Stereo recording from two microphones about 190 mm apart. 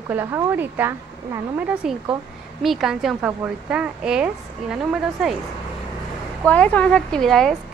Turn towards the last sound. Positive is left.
turn(degrees=0)  # may be behind; listen again after turning